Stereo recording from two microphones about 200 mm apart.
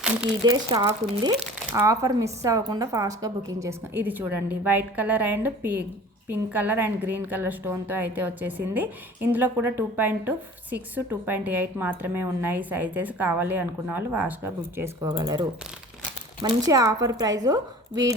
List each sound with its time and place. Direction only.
0.5 s a woman's voice: 20° right (ahead or behind)